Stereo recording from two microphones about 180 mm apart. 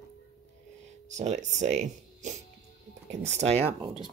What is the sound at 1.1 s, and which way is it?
Speech, 40° right (ahead or behind).